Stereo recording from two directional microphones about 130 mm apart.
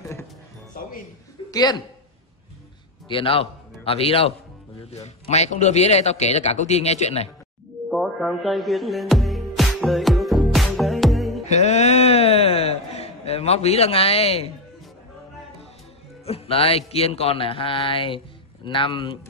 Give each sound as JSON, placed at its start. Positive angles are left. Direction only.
{"t": 1.5, "sound": "a woman's voice", "side_deg": 30}
{"t": 3.1, "sound": "a man's voice", "side_deg": 45}
{"t": 4.9, "sound": "a man's voice", "side_deg": 55}
{"t": 7.9, "sound": "music", "side_deg": 0}
{"t": 11.4, "sound": "a sound", "side_deg": 60}
{"t": 16.3, "sound": "speech", "side_deg": 50}